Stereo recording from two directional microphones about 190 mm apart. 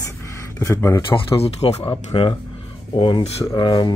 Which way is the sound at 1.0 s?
30° left (ahead or behind).